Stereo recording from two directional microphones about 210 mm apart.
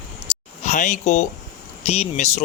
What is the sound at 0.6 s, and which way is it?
Speech, 35° left (ahead or behind).